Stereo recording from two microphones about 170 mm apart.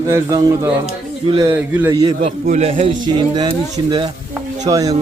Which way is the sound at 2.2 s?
50° right (ahead or behind).